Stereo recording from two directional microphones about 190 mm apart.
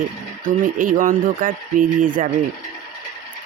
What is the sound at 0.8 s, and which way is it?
Speech, 45° right (ahead or behind).